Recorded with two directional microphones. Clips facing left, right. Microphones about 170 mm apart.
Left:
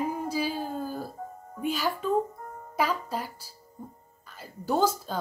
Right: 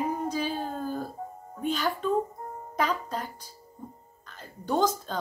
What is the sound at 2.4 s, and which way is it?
Music, 25° right (ahead or behind).